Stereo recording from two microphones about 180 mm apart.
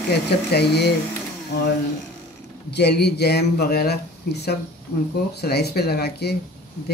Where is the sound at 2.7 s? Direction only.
65° left (ahead or behind).